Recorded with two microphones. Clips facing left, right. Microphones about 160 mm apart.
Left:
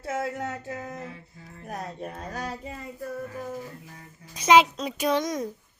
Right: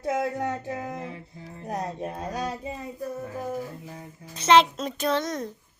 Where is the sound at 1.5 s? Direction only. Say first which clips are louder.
Right 4 dB; 20° right (ahead or behind).